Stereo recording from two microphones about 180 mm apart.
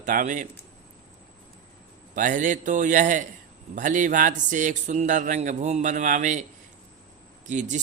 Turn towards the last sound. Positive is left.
turn(degrees=-45)  # may be behind; listen again after turning